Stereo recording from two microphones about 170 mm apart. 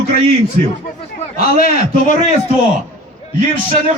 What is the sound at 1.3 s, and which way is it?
Speech, 60° left (ahead or behind).